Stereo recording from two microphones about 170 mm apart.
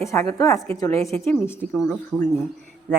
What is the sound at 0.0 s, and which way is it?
A woman's voice, 15° left (ahead or behind).